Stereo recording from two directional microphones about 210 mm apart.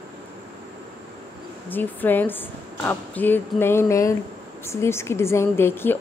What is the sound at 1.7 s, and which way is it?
A woman's voice, 10° left (ahead or behind).